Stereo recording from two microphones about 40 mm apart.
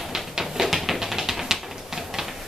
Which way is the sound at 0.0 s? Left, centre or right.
Centre.